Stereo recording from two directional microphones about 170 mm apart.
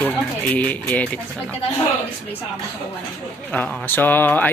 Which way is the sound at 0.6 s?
10° left (ahead or behind).